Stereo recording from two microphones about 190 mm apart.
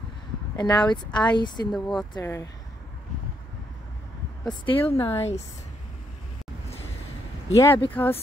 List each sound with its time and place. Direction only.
0.6 s speech: 25° left (ahead or behind)
1.7 s speech: centre (ahead or behind)
2.1 s speech: 15° left (ahead or behind)
4.5 s speech: 25° left (ahead or behind)
4.9 s speech: 10° left (ahead or behind)
7.5 s speech: 15° left (ahead or behind)